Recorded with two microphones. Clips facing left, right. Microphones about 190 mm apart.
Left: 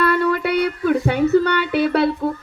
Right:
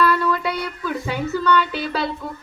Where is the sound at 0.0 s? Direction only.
60° left (ahead or behind).